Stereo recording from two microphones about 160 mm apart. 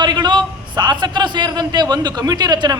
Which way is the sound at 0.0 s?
25° right (ahead or behind).